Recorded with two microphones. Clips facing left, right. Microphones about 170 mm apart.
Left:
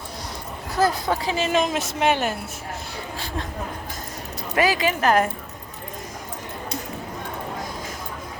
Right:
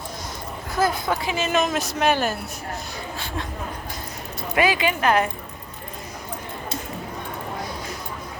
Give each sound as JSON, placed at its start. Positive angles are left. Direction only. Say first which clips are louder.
{"t": 0.8, "sound": "speech", "louder": "left 1 dB", "side_deg": 35}
{"t": 4.5, "sound": "speech", "louder": "even", "side_deg": 40}